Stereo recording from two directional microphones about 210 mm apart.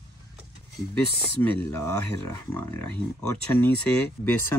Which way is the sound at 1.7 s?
15° left (ahead or behind).